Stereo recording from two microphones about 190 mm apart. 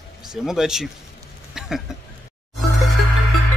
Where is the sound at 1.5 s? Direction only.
Centre (ahead or behind).